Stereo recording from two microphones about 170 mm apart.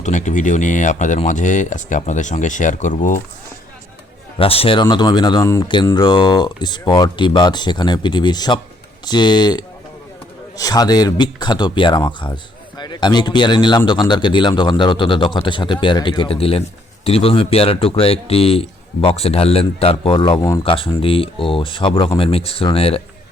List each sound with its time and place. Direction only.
0.0 s speech: 45° left (ahead or behind)
4.4 s speech: 35° left (ahead or behind)